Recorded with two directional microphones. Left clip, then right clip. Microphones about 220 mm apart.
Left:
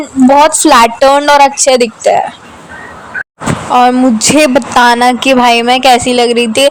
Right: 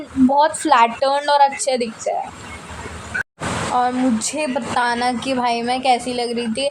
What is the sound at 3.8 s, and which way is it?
Speech, 45° left (ahead or behind).